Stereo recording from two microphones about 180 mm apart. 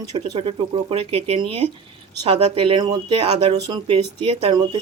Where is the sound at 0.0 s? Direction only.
30° right (ahead or behind).